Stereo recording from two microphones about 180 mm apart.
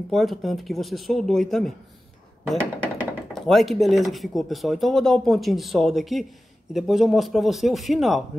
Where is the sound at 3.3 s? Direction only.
Centre (ahead or behind).